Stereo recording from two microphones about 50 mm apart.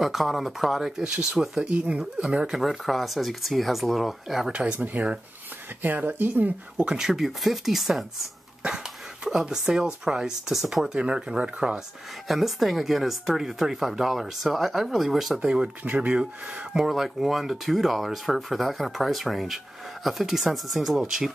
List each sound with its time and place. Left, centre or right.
0.0 s speech: centre
1.0 s speech: right
1.7 s speech: right
2.2 s speech: centre
2.5 s speech: centre
4.5 s speech: right
4.7 s speech: right
6.9 s speech: centre
12.3 s speech: centre
15.4 s speech: centre
15.8 s speech: right
16.7 s speech: centre